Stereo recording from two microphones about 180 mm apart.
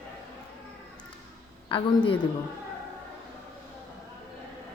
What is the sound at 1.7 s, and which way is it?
Speech, 25° left (ahead or behind).